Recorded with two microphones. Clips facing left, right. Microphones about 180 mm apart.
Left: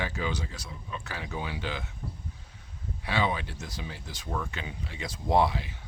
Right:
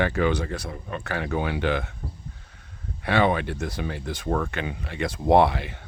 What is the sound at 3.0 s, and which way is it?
Speech, 60° right (ahead or behind).